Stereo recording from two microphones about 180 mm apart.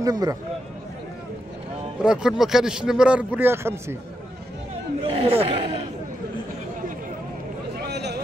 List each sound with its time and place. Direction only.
0.0 s a man's voice: 20° right (ahead or behind)
2.0 s a man's voice: 5° right (ahead or behind)
5.0 s speech: 30° right (ahead or behind)
7.8 s a sound: 70° right (ahead or behind)